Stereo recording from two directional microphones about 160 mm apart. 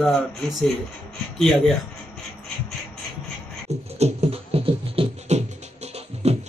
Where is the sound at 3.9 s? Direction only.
40° right (ahead or behind).